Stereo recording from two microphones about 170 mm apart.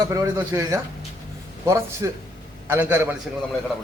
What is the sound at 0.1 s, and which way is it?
Speech, 15° right (ahead or behind).